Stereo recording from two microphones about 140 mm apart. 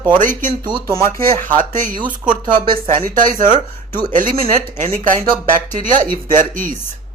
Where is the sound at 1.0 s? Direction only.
90° right.